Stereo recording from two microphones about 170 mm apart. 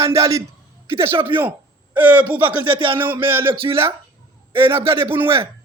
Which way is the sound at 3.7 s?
15° right (ahead or behind).